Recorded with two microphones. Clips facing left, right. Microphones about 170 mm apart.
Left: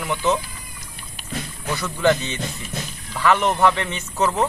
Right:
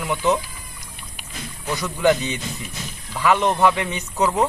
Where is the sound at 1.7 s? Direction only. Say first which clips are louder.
Right 1 dB; 15° right (ahead or behind).